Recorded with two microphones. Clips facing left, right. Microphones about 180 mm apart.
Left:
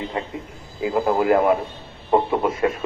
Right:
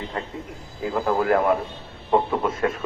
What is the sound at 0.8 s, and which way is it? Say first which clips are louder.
A man's voice: left 3 dB; 15° left (ahead or behind).